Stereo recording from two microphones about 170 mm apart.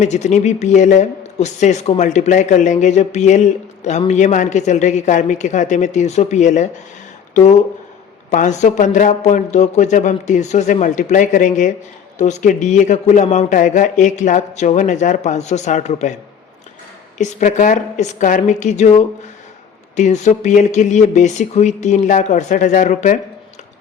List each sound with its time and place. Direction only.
0.0 s a man's voice: 45° left (ahead or behind)
8.3 s a man's voice: 45° left (ahead or behind)
17.2 s a man's voice: 45° left (ahead or behind)